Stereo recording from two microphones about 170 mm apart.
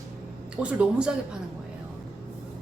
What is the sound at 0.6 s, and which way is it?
Speech, 5° right (ahead or behind).